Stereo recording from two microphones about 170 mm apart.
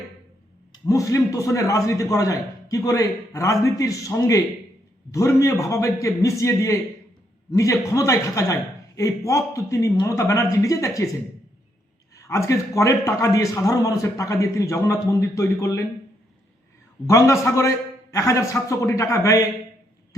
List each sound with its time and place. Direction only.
0.9 s a man's voice: 20° left (ahead or behind)
12.1 s a man's voice: 20° left (ahead or behind)
17.1 s a man's voice: 15° left (ahead or behind)